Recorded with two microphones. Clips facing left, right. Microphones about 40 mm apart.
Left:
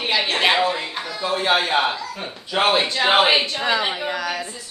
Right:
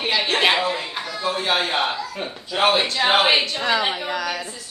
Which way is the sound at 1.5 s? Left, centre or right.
Centre.